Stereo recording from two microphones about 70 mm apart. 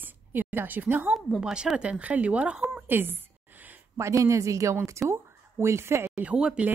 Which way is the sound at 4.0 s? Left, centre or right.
Right.